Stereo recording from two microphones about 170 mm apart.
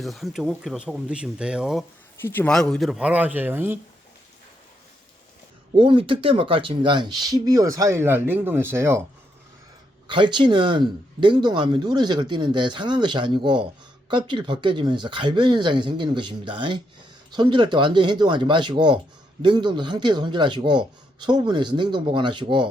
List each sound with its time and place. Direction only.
0.0 s speech: centre (ahead or behind)
2.2 s speech: 10° left (ahead or behind); by 3.8 s 10° right (ahead or behind)
5.7 s speech: 30° right (ahead or behind)
10.1 s speech: 30° right (ahead or behind)